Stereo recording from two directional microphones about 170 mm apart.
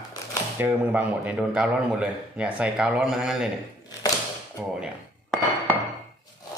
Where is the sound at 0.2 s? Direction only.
25° left (ahead or behind).